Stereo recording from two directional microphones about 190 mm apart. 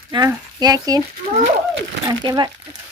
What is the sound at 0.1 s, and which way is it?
Speech, 20° right (ahead or behind).